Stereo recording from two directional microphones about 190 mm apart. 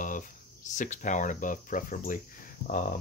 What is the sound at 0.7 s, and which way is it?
Speech, 40° left (ahead or behind).